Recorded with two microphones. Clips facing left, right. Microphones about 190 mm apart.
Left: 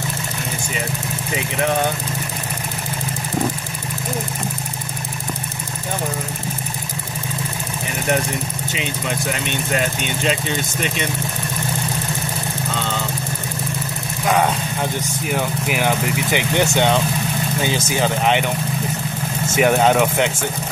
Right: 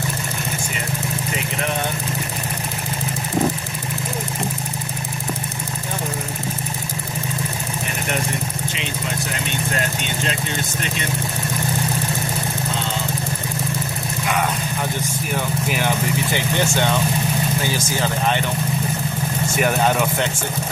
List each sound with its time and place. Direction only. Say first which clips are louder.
15.7 s vehicle: left 2 dB; 15° left (ahead or behind)
17.6 s speech: left 2 dB; 20° left (ahead or behind)
19.6 s speech: left 5 dB; 15° left (ahead or behind)